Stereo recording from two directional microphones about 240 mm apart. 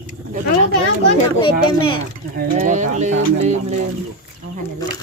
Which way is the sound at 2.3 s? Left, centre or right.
Right.